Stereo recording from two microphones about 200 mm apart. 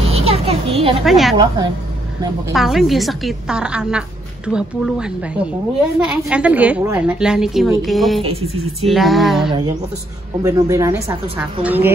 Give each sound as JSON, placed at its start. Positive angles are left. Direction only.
{"t": 0.0, "sound": "a sound", "side_deg": -30}
{"t": 1.0, "sound": "a woman's voice", "side_deg": 0}
{"t": 2.5, "sound": "a woman's voice", "side_deg": 0}
{"t": 8.2, "sound": "speech", "side_deg": -30}
{"t": 8.8, "sound": "a woman's voice", "side_deg": 0}
{"t": 9.5, "sound": "a woman's voice", "side_deg": -20}